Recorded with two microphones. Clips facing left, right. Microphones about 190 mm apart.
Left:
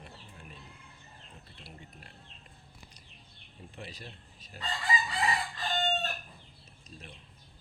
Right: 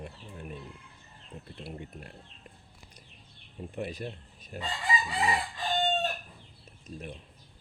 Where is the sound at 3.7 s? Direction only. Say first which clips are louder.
Right 10 dB; 50° right (ahead or behind).